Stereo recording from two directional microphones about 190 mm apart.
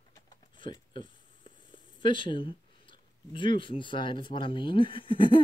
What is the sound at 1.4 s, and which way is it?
Speech, 25° left (ahead or behind).